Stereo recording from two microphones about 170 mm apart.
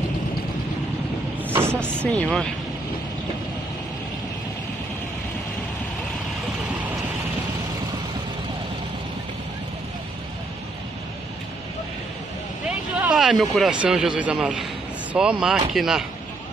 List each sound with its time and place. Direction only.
1.5 s vehicle: 15° right (ahead or behind)
2.0 s speech: 5° left (ahead or behind)
12.6 s speech: 5° right (ahead or behind)